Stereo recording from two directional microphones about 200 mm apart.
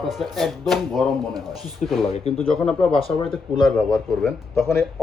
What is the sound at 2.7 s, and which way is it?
Speech, 5° left (ahead or behind).